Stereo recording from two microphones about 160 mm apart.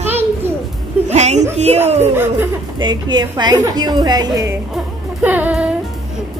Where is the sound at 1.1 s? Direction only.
45° right (ahead or behind).